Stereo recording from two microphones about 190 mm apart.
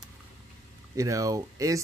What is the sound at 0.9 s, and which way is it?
Speech, 15° right (ahead or behind).